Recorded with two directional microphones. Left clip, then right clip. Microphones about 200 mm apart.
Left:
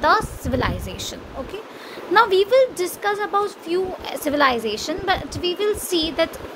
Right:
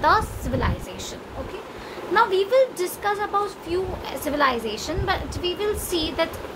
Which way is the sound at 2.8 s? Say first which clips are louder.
Left 2 dB; 20° left (ahead or behind).